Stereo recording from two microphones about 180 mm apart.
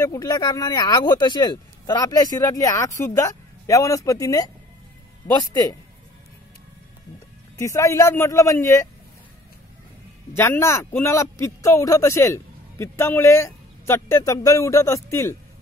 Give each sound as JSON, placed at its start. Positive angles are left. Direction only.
{"t": 0.0, "sound": "speech", "side_deg": 15}
{"t": 7.5, "sound": "speech", "side_deg": 15}
{"t": 10.3, "sound": "speech", "side_deg": 15}